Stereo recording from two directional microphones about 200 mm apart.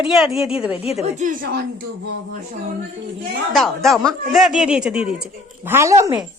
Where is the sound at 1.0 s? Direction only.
35° right (ahead or behind).